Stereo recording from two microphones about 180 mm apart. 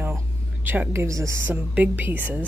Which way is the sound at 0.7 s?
15° right (ahead or behind).